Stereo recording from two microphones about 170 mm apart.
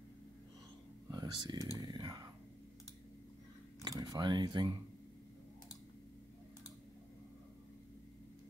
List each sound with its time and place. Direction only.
1.1 s a sound: 25° right (ahead or behind)
1.8 s whispering: 25° right (ahead or behind)
3.8 s speech: 20° right (ahead or behind)